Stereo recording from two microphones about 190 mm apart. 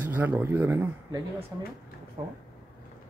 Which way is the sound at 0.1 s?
10° right (ahead or behind).